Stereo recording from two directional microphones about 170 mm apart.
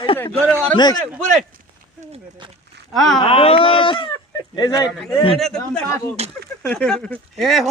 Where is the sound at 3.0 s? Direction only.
Centre (ahead or behind).